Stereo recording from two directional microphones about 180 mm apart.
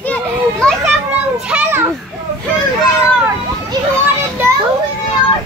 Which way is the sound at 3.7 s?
15° right (ahead or behind).